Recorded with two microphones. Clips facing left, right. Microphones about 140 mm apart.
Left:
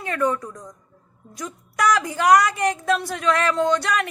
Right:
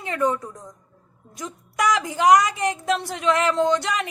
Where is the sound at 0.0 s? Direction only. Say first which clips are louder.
Even; 20° right (ahead or behind).